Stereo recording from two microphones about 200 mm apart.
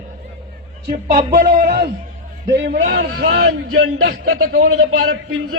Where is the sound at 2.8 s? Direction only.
50° right (ahead or behind).